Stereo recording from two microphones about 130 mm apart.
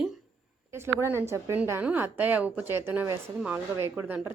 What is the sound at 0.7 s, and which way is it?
A woman's voice, 20° right (ahead or behind).